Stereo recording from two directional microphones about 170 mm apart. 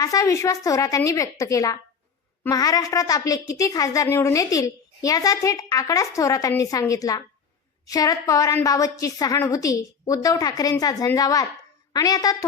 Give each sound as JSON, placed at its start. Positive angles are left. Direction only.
{"t": 0.0, "sound": "a woman's voice", "side_deg": 20}